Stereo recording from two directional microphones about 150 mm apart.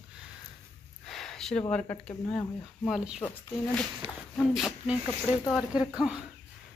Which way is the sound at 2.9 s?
5° right (ahead or behind).